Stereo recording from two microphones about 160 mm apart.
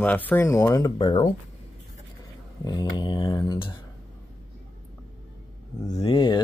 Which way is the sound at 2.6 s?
25° left (ahead or behind).